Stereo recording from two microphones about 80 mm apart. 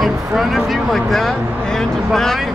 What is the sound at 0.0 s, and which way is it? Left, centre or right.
Speech, centre.